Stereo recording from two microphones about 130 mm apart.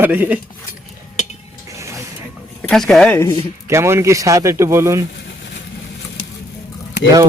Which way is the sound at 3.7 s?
20° right (ahead or behind).